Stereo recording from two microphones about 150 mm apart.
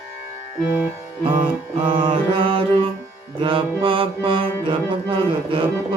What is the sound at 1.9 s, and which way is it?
Music, 35° right (ahead or behind).